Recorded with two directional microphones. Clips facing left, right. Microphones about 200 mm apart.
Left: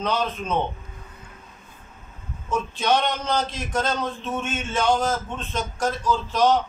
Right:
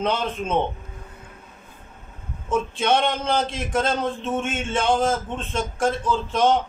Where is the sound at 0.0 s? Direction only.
25° right (ahead or behind).